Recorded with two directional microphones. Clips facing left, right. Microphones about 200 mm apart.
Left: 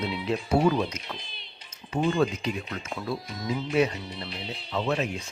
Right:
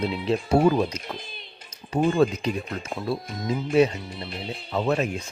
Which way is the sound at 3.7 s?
25° right (ahead or behind).